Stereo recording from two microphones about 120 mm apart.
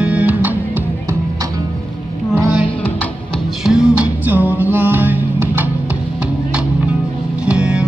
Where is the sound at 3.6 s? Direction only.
5° right (ahead or behind).